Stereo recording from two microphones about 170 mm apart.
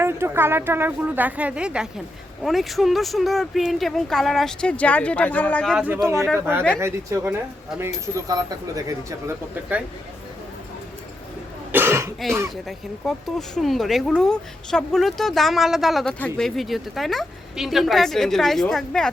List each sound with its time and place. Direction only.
0.0 s a woman's voice: 15° right (ahead or behind); by 5.7 s 10° left (ahead or behind)
5.7 s a woman's voice: 5° right (ahead or behind)
11.7 s cough: 15° right (ahead or behind)
12.6 s speech: centre (ahead or behind)